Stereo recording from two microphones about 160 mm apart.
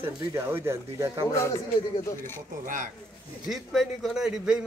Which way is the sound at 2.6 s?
55° right (ahead or behind).